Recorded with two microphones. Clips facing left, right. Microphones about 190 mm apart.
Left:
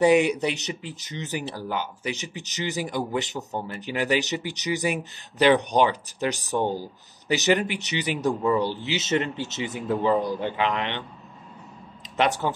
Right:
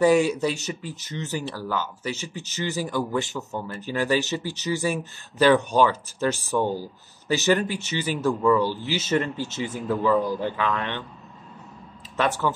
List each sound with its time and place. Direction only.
0.0 s a man's voice: 20° left (ahead or behind)